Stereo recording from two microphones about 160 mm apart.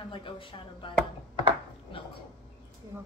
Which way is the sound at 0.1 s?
30° left (ahead or behind).